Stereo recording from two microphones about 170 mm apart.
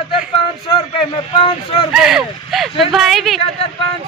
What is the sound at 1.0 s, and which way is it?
Speech, 30° left (ahead or behind).